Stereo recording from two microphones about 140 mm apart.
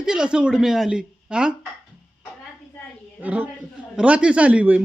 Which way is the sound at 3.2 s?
10° right (ahead or behind).